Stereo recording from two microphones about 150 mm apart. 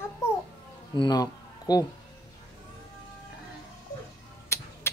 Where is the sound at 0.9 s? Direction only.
25° left (ahead or behind).